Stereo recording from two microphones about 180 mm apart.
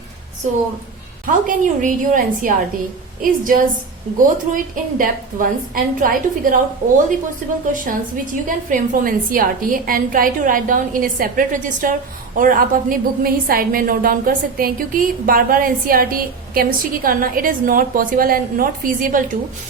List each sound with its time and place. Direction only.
1.3 s a woman's voice: 45° right (ahead or behind)
7.7 s a woman's voice: 50° right (ahead or behind)